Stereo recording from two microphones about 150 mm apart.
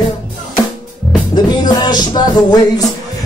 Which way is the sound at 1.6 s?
30° left (ahead or behind).